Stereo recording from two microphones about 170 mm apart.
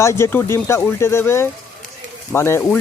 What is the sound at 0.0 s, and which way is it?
Speech, 15° left (ahead or behind).